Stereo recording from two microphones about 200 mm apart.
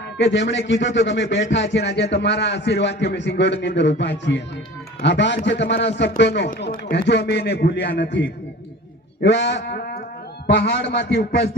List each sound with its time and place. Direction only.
0.2 s a man's voice: 60° left (ahead or behind)